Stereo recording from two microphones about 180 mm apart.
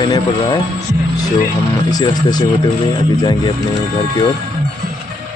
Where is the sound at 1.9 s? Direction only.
20° left (ahead or behind).